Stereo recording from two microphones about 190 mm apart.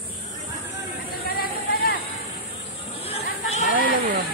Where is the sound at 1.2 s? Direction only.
50° left (ahead or behind).